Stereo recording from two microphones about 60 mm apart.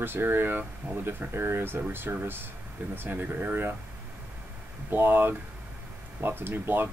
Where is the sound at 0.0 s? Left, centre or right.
Right.